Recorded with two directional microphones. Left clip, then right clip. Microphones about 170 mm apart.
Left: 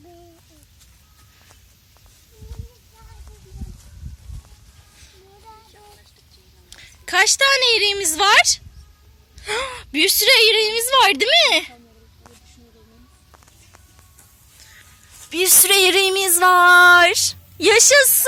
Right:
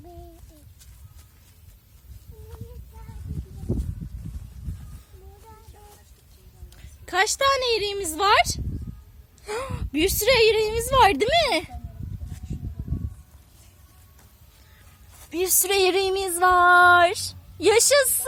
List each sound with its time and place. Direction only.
6.7 s a woman's voice: 5° right (ahead or behind)
15.3 s speech: centre (ahead or behind)
16.4 s a sound: 10° left (ahead or behind)